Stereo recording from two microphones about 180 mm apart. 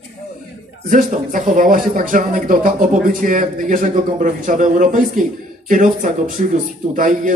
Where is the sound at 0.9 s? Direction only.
45° right (ahead or behind).